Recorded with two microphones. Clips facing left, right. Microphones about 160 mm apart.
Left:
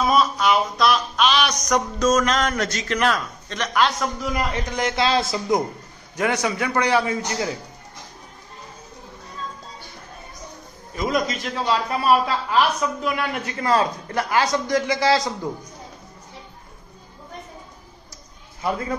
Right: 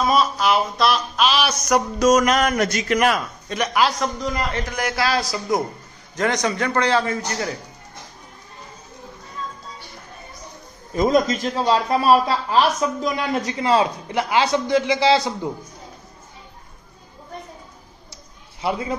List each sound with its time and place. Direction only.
0.0 s speech: centre (ahead or behind)
4.3 s a man's voice: 15° left (ahead or behind)
6.1 s a man's voice: 10° left (ahead or behind)
11.0 s a man's voice: 35° right (ahead or behind)
13.6 s a man's voice: 20° right (ahead or behind)
15.1 s speech: 10° right (ahead or behind)
18.7 s speech: 15° right (ahead or behind)